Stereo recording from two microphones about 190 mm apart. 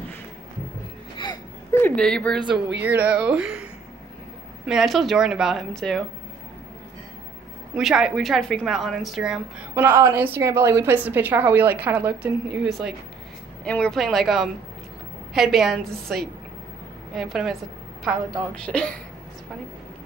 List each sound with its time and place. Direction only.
1.1 s wail: 25° left (ahead or behind)
2.0 s a woman's voice: 5° left (ahead or behind)
4.6 s a woman's voice: centre (ahead or behind)
7.7 s a woman's voice: 5° right (ahead or behind)